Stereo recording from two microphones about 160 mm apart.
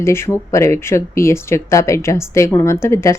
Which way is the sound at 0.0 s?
15° left (ahead or behind).